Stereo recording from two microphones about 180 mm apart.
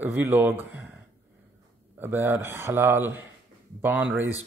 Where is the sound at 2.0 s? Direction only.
10° right (ahead or behind).